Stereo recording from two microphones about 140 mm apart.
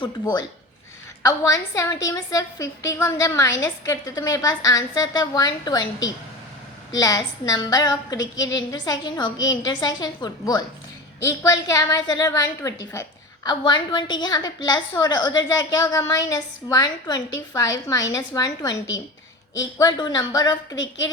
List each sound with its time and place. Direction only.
0.0 s a woman's voice: 30° left (ahead or behind)
13.5 s a woman's voice: 35° left (ahead or behind)